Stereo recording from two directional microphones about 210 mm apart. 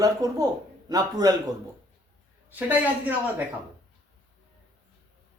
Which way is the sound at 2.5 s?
10° right (ahead or behind).